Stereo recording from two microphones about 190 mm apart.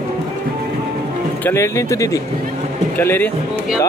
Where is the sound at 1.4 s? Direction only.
15° left (ahead or behind).